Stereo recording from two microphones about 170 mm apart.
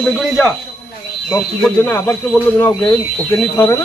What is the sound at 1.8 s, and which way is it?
A man's voice, 15° left (ahead or behind).